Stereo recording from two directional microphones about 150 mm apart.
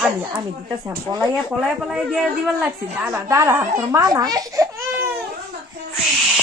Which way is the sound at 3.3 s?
20° right (ahead or behind).